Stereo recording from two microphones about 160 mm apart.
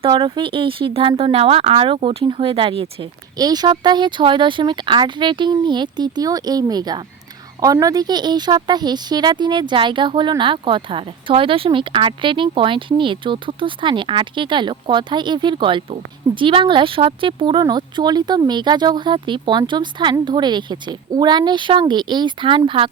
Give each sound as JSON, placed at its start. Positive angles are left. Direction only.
{"t": 0.0, "sound": "speech", "side_deg": -30}
{"t": 3.3, "sound": "a woman's voice", "side_deg": -25}